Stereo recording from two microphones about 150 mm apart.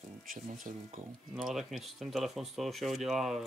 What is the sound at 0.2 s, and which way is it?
Speech, 65° right (ahead or behind).